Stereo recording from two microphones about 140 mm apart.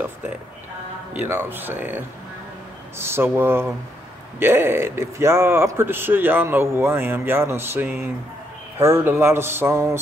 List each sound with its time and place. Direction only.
1.1 s speech: 15° right (ahead or behind)